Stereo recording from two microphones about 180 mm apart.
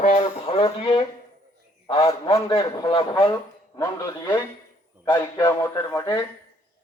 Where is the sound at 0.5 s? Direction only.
25° left (ahead or behind).